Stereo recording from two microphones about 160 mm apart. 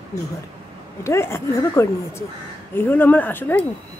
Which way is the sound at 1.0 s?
15° left (ahead or behind).